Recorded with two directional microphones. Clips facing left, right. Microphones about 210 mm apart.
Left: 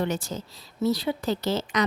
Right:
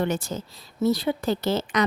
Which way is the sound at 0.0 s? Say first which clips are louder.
Right 2 dB; 55° right (ahead or behind).